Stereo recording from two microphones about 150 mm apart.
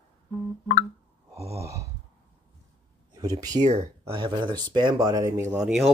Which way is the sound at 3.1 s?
25° right (ahead or behind).